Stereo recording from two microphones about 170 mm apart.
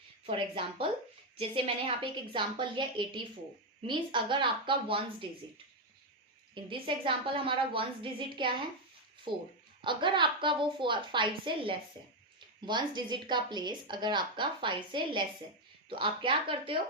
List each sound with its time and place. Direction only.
0.3 s a woman's voice: 30° right (ahead or behind)
6.5 s a woman's voice: 30° right (ahead or behind)